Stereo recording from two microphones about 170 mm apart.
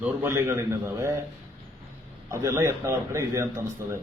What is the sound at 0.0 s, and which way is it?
A man's voice, 15° right (ahead or behind).